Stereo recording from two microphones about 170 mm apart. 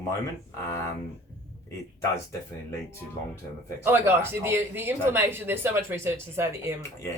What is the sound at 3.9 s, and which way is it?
Speech, 15° right (ahead or behind).